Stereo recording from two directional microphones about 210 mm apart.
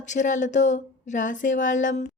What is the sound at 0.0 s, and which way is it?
A woman's voice, 35° left (ahead or behind).